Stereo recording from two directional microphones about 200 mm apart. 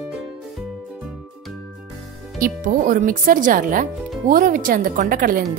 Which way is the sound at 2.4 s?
45° right (ahead or behind).